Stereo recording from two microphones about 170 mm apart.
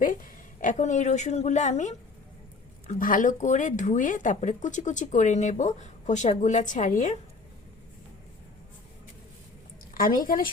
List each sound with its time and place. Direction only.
0.0 s a woman's voice: 55° left (ahead or behind)
9.9 s a woman's voice: 55° left (ahead or behind)